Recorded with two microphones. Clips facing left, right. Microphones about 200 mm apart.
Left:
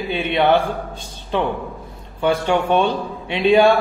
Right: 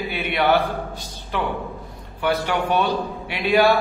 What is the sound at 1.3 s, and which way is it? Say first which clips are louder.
A man's voice: left 4 dB; 20° left (ahead or behind).